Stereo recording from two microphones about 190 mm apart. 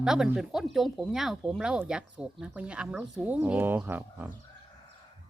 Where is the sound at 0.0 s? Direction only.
5° right (ahead or behind).